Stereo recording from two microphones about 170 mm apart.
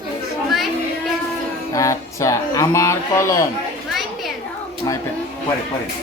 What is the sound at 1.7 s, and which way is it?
Speech, 20° left (ahead or behind).